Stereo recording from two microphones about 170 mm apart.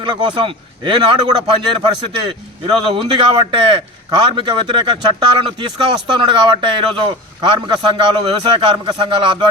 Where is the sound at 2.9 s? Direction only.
30° right (ahead or behind).